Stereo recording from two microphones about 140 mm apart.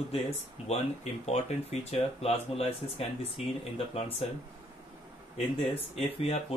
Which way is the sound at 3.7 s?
45° left (ahead or behind).